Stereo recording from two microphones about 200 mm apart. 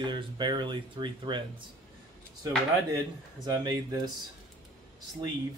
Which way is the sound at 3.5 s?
20° right (ahead or behind).